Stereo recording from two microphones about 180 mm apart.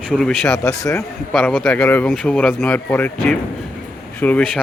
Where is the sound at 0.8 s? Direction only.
20° left (ahead or behind).